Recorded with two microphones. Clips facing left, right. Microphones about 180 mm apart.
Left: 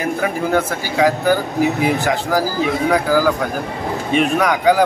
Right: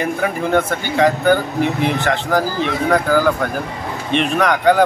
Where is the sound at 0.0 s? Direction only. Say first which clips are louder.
Even; 5° left (ahead or behind).